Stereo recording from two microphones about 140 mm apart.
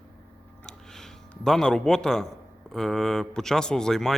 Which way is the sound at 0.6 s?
5° left (ahead or behind).